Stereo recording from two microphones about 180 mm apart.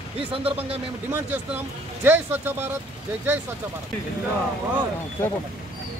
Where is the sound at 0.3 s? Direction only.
30° right (ahead or behind).